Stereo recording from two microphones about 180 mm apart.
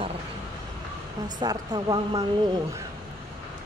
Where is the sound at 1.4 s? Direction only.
20° right (ahead or behind).